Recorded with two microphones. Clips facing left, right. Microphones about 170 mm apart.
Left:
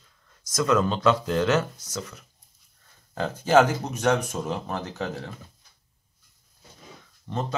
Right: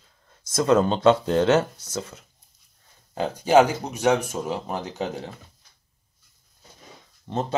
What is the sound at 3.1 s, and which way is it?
Speech, 15° right (ahead or behind).